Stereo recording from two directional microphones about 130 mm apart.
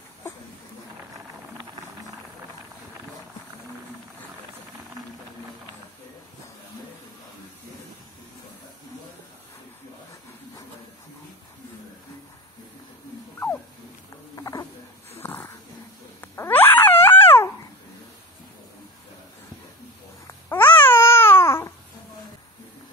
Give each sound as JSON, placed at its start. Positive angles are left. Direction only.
{"t": 14.3, "sound": "a sound", "side_deg": 25}
{"t": 15.1, "sound": "dog", "side_deg": 15}
{"t": 20.2, "sound": "babbling", "side_deg": 15}